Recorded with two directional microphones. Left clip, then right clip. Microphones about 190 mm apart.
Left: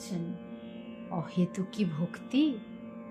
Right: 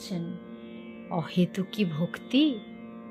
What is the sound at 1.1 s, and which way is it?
Speech, 20° right (ahead or behind).